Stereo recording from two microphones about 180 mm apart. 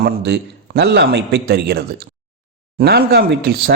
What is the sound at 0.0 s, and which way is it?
A man's voice, 65° right (ahead or behind).